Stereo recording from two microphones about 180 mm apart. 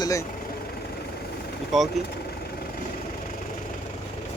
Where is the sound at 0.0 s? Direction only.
15° left (ahead or behind).